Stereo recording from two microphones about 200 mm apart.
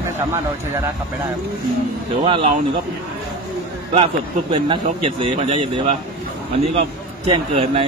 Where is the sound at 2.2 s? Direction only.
30° right (ahead or behind).